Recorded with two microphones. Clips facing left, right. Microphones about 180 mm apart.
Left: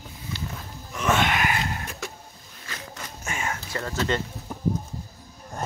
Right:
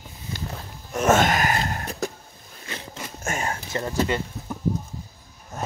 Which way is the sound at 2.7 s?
25° right (ahead or behind).